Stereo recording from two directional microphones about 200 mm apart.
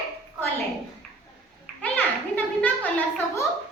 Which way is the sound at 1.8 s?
10° left (ahead or behind).